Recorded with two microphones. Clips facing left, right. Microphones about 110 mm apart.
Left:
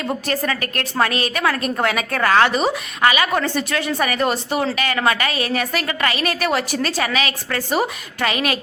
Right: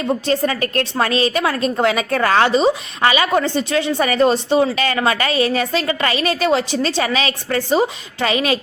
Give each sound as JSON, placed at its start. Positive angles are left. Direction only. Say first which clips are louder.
{"t": 0.3, "sound": "a woman's voice", "louder": "right 4 dB", "side_deg": -30}